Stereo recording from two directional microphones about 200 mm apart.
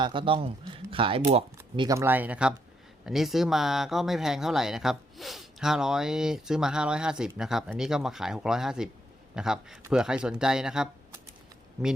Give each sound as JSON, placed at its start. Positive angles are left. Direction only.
{"t": 0.0, "sound": "speech", "side_deg": -25}